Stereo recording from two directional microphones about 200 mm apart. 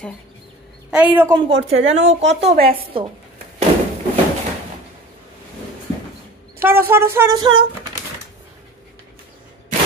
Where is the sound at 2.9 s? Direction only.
25° right (ahead or behind).